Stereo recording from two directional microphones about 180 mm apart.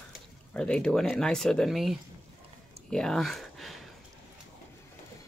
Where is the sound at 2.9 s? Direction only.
5° left (ahead or behind).